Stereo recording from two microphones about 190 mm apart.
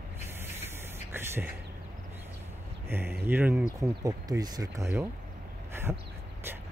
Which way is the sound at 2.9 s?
10° right (ahead or behind).